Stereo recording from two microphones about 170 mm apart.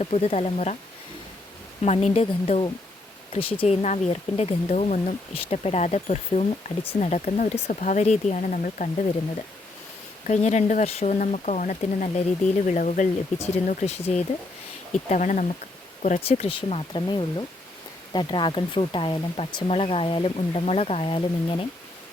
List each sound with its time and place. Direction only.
0.0 s speech: 35° left (ahead or behind)
1.8 s speech: 40° left (ahead or behind)
10.2 s speech: 45° left (ahead or behind)